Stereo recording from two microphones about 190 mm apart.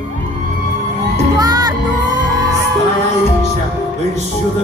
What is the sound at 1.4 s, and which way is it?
Crowd, 20° right (ahead or behind).